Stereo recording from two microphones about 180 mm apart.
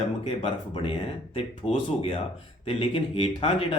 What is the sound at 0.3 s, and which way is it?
Speech, 30° left (ahead or behind).